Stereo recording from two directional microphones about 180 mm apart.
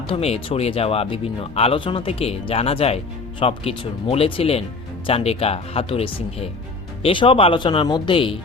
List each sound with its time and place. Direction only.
0.1 s speech: 30° left (ahead or behind)